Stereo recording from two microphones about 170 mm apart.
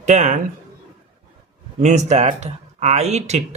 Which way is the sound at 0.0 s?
45° right (ahead or behind).